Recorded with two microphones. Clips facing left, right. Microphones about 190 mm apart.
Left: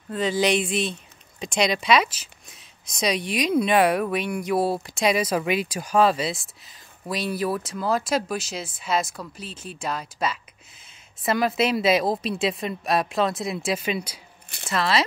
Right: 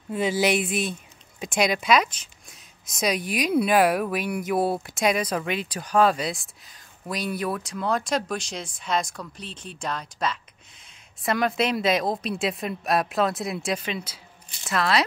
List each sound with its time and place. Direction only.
0.1 s speech: 10° right (ahead or behind); by 14.2 s 10° left (ahead or behind)
14.7 s speech: centre (ahead or behind)